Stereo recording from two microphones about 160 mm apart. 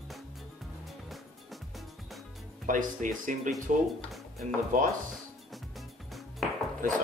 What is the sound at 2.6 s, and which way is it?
Speech, 55° right (ahead or behind).